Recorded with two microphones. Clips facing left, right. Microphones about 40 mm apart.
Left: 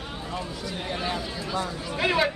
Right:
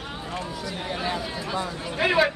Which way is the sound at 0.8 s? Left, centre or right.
Centre.